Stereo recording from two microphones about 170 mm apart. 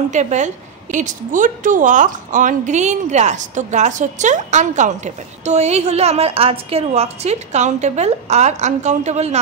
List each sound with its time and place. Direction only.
0.1 s a woman's voice: 45° right (ahead or behind)